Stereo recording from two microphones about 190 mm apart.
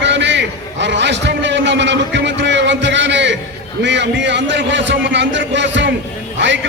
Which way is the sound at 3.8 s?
65° right (ahead or behind).